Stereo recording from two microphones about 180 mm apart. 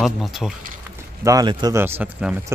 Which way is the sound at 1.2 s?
20° right (ahead or behind).